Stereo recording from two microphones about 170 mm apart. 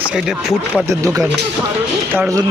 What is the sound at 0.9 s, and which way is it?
Speech, 20° right (ahead or behind).